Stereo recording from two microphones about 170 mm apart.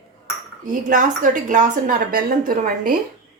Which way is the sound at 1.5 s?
50° right (ahead or behind).